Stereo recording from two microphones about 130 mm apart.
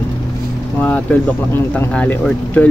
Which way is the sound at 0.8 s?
10° left (ahead or behind).